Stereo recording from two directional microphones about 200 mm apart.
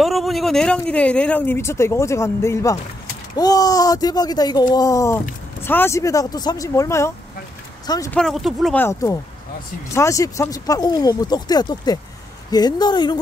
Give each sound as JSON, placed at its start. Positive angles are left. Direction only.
{"t": 0.0, "sound": "speech", "side_deg": 0}
{"t": 8.1, "sound": "speech", "side_deg": 0}
{"t": 8.8, "sound": "speech", "side_deg": 15}